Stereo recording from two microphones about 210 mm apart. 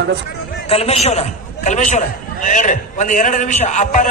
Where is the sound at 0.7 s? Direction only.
30° left (ahead or behind).